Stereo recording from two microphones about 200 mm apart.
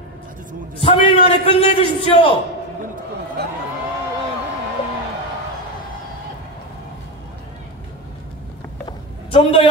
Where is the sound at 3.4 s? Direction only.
55° right (ahead or behind).